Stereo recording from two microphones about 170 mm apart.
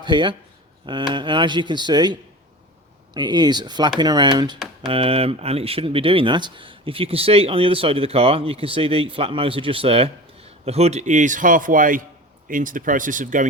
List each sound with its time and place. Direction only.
0.0 s speech: 25° right (ahead or behind)
3.2 s a man's voice: 25° right (ahead or behind); by 13.5 s 50° right (ahead or behind)